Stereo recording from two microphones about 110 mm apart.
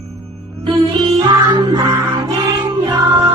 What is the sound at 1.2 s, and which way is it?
Music, 40° right (ahead or behind).